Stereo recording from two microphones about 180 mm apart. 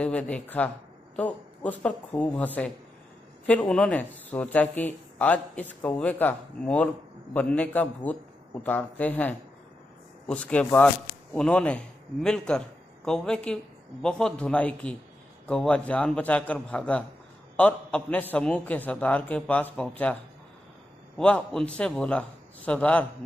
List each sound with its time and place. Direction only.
0.0 s a man's voice: 5° left (ahead or behind)
21.2 s a man's voice: 5° left (ahead or behind)